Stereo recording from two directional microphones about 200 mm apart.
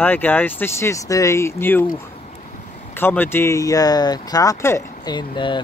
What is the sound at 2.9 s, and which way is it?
Speech, 10° left (ahead or behind).